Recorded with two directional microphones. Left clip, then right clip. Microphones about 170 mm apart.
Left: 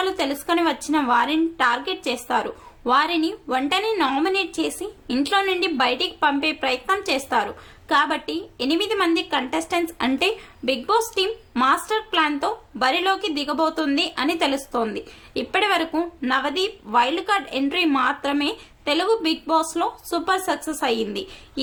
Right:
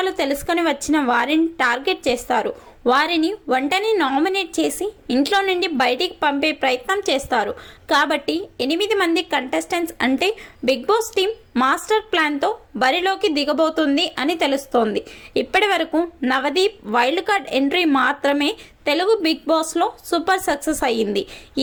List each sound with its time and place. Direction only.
0.0 s a woman's voice: 25° right (ahead or behind)
16.3 s a woman's voice: 25° right (ahead or behind)